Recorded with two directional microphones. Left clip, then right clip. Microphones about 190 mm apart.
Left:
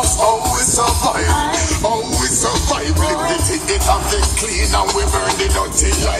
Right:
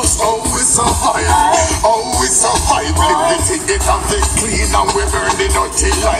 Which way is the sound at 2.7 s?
45° right (ahead or behind).